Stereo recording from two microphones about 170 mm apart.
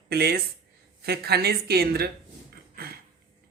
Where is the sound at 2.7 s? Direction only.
65° right (ahead or behind).